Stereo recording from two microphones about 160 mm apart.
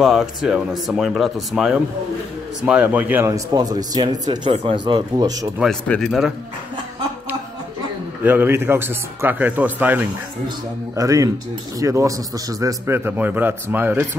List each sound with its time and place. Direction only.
0.0 s speech: centre (ahead or behind); by 5.5 s 20° right (ahead or behind)
5.6 s speech: 5° left (ahead or behind)
8.2 s a man's voice: 10° right (ahead or behind)